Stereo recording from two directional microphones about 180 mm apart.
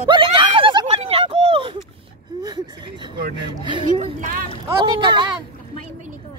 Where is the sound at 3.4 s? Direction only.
25° right (ahead or behind).